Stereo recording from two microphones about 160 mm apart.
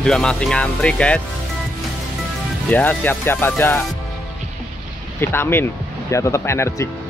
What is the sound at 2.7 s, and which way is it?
Speech, 10° left (ahead or behind).